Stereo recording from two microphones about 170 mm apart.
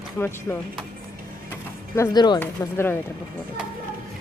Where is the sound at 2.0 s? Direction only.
25° left (ahead or behind).